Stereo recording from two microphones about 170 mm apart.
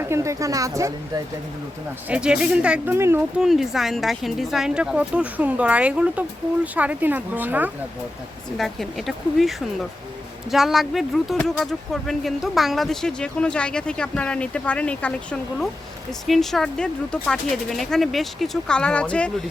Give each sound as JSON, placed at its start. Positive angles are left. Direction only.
{"t": 0.0, "sound": "speech", "side_deg": -15}
{"t": 2.0, "sound": "speech", "side_deg": -5}
{"t": 3.4, "sound": "speech", "side_deg": 0}
{"t": 8.5, "sound": "speech", "side_deg": 0}